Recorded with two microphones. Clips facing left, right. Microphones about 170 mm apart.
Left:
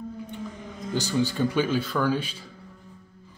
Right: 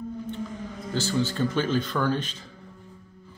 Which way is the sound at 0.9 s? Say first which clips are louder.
Left 1 dB; 15° left (ahead or behind).